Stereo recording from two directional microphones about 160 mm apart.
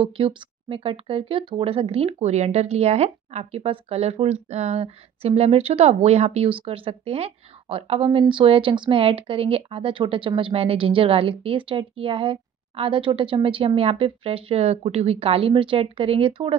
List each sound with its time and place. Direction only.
0.0 s speech: 35° right (ahead or behind)